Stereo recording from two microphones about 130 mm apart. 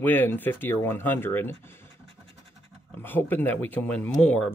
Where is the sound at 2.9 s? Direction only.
15° left (ahead or behind).